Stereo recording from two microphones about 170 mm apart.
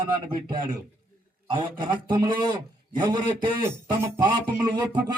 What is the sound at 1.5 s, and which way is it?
A man's voice, 30° right (ahead or behind).